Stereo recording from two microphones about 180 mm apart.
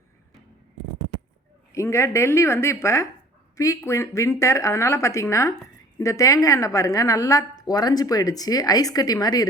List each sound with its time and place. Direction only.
1.7 s a woman's voice: 15° left (ahead or behind)